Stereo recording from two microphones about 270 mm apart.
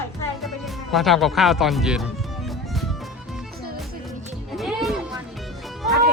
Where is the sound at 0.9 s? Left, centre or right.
Centre.